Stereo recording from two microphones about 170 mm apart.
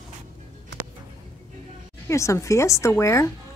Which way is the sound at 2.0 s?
15° left (ahead or behind).